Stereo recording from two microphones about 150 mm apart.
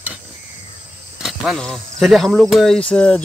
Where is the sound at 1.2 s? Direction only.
Centre (ahead or behind).